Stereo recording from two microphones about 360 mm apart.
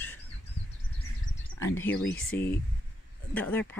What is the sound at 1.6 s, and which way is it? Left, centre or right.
Speech, centre.